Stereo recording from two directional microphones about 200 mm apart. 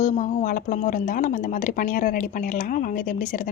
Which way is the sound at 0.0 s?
40° left (ahead or behind).